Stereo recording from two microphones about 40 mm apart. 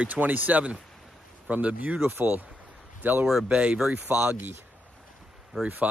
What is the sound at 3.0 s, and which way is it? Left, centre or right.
Speech, right.